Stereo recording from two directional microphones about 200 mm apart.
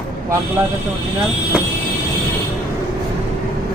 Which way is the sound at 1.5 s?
5° right (ahead or behind).